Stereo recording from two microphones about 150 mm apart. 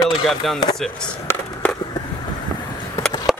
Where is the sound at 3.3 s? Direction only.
Centre (ahead or behind).